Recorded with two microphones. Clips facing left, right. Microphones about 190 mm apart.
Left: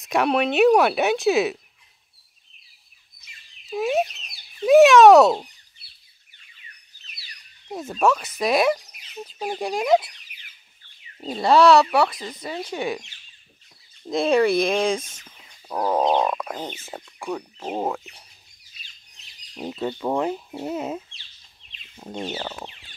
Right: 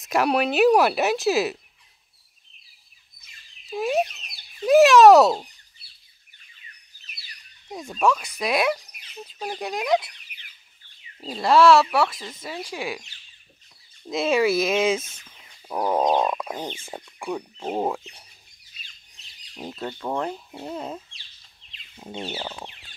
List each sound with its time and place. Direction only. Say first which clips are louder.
0.0 s speech: left 1 dB; centre (ahead or behind)
3.6 s a sound: left 1 dB; centre (ahead or behind)
7.6 s speech: left 2 dB; 5° left (ahead or behind)
10.3 s a sound: right 1 dB; 60° right (ahead or behind)
11.2 s speech: left 1 dB; centre (ahead or behind)
14.1 s speech: left 2 dB; 5° right (ahead or behind)
15.7 s frog: left 1 dB; 10° right (ahead or behind)
17.0 s speech: even; 10° right (ahead or behind)
17.6 s speech: right 3 dB; 5° left (ahead or behind)
19.5 s speech: left 5 dB; 5° left (ahead or behind)
21.9 s speech: left 2 dB; 5° right (ahead or behind)